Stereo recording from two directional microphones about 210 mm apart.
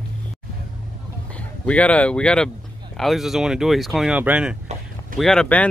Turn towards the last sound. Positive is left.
turn(degrees=5)  # may be behind; listen again after turning